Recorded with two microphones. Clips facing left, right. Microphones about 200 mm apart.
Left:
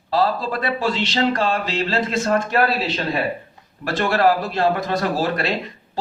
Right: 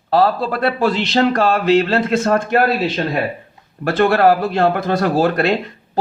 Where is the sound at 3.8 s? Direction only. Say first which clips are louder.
Right 5 dB; 55° right (ahead or behind).